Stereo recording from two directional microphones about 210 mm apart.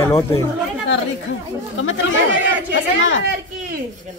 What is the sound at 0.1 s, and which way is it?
Speech, 15° left (ahead or behind).